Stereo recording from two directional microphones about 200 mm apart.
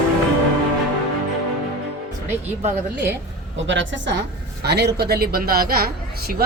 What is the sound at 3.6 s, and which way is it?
A woman's voice, 65° right (ahead or behind).